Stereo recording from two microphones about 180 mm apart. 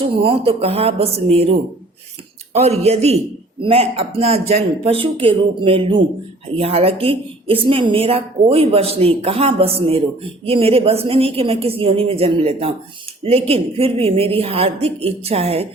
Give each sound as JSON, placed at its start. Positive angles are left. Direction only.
{"t": 0.0, "sound": "a man's voice", "side_deg": -30}